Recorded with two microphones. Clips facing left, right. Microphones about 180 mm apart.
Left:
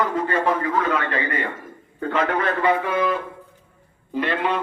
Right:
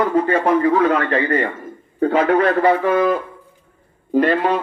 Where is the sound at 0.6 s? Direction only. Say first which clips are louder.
Right 7 dB; 45° right (ahead or behind).